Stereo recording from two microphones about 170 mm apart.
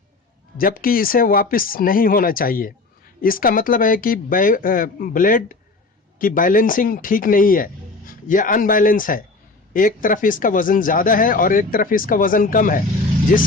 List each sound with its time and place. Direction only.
0.5 s speech: 60° left (ahead or behind)